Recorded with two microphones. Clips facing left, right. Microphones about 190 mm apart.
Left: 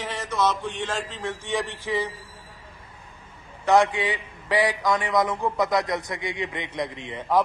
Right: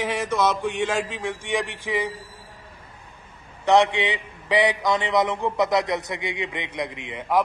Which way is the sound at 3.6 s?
25° right (ahead or behind).